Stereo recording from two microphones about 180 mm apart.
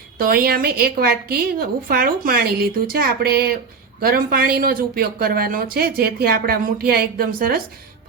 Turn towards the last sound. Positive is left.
turn(degrees=-55)  # may be behind; listen again after turning